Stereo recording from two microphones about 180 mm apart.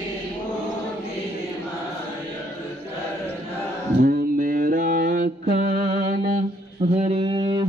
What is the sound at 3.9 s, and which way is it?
Mantra, 55° right (ahead or behind).